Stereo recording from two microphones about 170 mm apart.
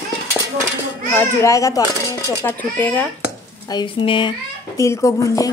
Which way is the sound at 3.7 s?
30° left (ahead or behind).